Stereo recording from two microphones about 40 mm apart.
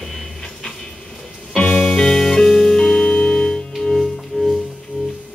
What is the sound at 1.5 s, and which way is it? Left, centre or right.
Music, centre.